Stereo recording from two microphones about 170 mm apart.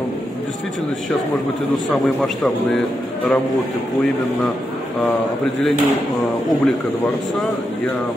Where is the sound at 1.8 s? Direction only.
Centre (ahead or behind).